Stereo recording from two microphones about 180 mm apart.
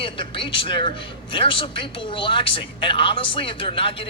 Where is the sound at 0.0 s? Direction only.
30° left (ahead or behind).